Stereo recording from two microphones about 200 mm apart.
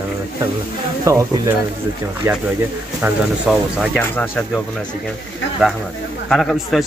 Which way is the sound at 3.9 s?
10° left (ahead or behind).